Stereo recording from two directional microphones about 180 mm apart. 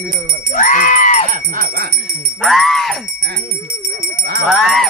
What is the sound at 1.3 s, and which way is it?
Music, 55° right (ahead or behind).